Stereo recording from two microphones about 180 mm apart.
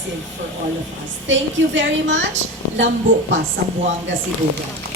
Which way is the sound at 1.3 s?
90° right.